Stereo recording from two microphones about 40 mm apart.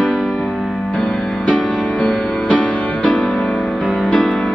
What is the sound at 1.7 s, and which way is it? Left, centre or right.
Music, left.